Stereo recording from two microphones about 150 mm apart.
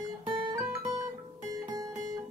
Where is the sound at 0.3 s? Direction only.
35° right (ahead or behind).